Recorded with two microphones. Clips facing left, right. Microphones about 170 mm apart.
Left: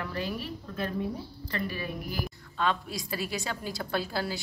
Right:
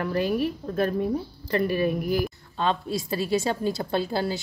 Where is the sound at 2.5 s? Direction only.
30° right (ahead or behind).